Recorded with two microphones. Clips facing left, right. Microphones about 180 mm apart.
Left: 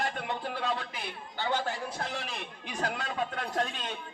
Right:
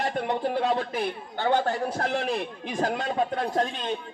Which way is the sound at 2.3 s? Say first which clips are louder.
Right 9 dB; 35° right (ahead or behind).